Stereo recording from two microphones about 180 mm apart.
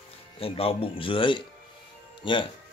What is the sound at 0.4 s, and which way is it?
Speech, 30° left (ahead or behind).